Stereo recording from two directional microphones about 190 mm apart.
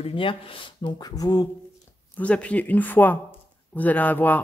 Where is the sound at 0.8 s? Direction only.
20° left (ahead or behind).